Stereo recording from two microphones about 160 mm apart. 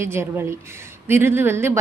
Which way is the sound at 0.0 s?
15° right (ahead or behind).